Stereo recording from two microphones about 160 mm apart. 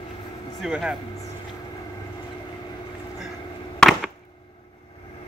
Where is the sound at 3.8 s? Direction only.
Centre (ahead or behind).